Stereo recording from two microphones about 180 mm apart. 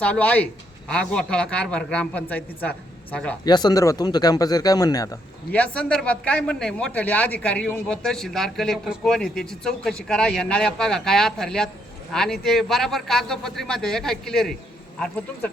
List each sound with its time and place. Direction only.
0.0 s a man's voice: 5° left (ahead or behind)
3.4 s speech: 25° left (ahead or behind)
5.5 s a man's voice: 5° left (ahead or behind)